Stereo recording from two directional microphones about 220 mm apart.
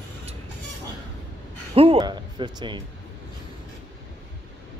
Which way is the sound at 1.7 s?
25° right (ahead or behind).